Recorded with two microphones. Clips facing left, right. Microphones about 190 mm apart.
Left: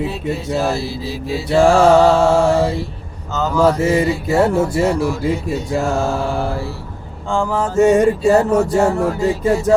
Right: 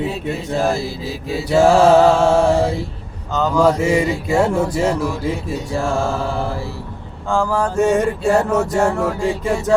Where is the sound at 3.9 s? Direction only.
5° left (ahead or behind).